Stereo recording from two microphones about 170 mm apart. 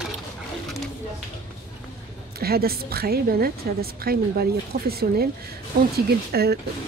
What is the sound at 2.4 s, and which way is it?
A woman's voice, 65° right (ahead or behind).